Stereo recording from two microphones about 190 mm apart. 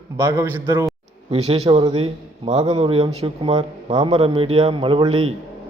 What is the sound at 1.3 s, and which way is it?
A man's voice, 30° right (ahead or behind).